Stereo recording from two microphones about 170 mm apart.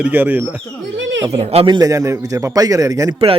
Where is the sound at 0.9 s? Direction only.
90° right.